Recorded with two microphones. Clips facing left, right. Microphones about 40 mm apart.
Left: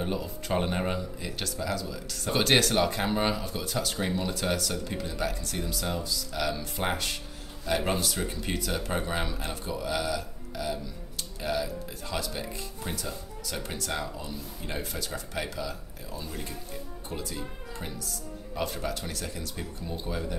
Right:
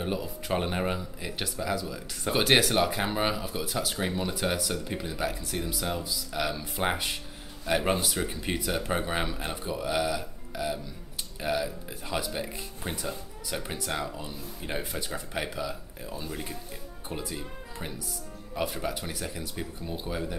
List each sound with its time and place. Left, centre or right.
0.0 s speech: centre